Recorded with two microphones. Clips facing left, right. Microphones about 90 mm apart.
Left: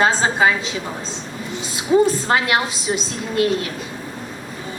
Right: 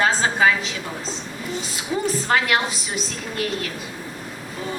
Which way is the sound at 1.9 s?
30° left (ahead or behind).